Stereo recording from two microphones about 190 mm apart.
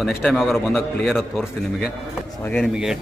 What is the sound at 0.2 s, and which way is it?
A man's voice, centre (ahead or behind).